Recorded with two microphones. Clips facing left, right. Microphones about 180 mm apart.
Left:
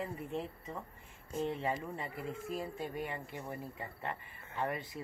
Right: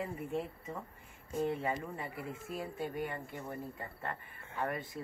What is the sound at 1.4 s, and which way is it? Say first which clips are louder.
Speech: right 1 dB; 5° right (ahead or behind).